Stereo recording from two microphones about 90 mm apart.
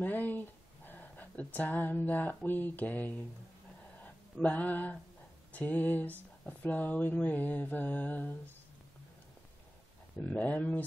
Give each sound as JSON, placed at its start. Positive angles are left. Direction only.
{"t": 0.0, "sound": "speech", "side_deg": 20}
{"t": 4.0, "sound": "a sound", "side_deg": 15}
{"t": 5.5, "sound": "mantra", "side_deg": 20}
{"t": 10.2, "sound": "speech", "side_deg": 15}